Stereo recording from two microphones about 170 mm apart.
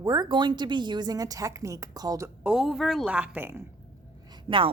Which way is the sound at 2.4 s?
5° right (ahead or behind).